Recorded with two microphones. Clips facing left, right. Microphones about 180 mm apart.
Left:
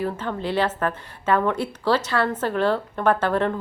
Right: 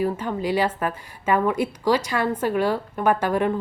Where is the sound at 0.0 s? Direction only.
10° right (ahead or behind).